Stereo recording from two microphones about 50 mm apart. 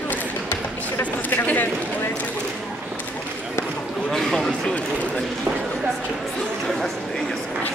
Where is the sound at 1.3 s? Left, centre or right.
Left.